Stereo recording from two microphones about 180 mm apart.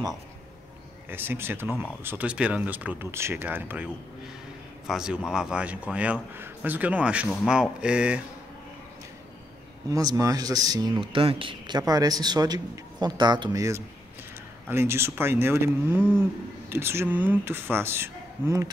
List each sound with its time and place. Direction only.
1.0 s speech: 10° right (ahead or behind)
9.8 s speech: 20° right (ahead or behind)